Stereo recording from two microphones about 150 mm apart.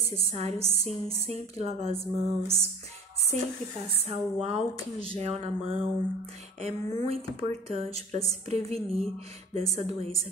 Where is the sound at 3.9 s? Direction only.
40° right (ahead or behind).